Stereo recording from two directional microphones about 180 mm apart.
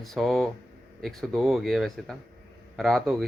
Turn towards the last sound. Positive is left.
turn(degrees=0)  # may be behind; listen again after turning